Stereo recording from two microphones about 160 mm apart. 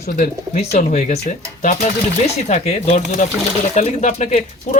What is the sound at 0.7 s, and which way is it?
Speech, 45° left (ahead or behind).